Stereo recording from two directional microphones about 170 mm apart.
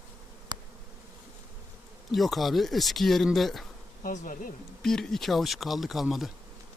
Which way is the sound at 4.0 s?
55° left (ahead or behind).